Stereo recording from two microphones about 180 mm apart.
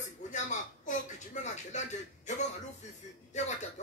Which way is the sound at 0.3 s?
45° left (ahead or behind).